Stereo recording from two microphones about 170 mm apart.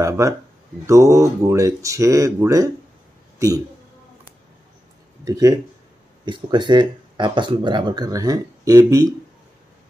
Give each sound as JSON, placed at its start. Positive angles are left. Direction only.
{"t": 0.2, "sound": "a man's voice", "side_deg": -20}
{"t": 5.2, "sound": "speech", "side_deg": -20}